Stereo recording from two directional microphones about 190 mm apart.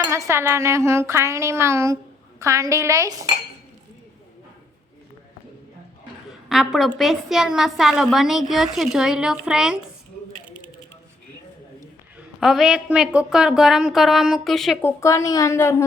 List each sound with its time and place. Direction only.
0.1 s speech: 15° right (ahead or behind)
6.5 s a woman's voice: centre (ahead or behind)
12.4 s a woman's voice: centre (ahead or behind)
14.8 s a woman's voice: 15° left (ahead or behind)